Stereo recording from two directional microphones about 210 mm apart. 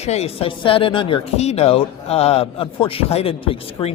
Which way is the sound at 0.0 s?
30° left (ahead or behind).